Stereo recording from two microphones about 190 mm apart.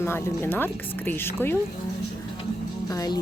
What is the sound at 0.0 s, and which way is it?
Speech, 15° left (ahead or behind).